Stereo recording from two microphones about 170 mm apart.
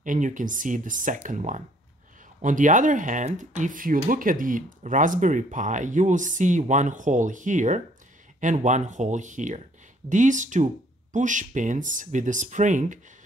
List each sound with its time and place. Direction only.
0.0 s speech: 50° right (ahead or behind)